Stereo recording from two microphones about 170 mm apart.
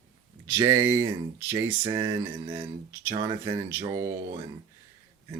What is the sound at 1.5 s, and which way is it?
Speech, 30° right (ahead or behind).